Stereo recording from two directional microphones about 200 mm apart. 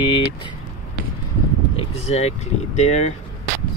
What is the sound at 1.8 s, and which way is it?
Speech, 30° left (ahead or behind).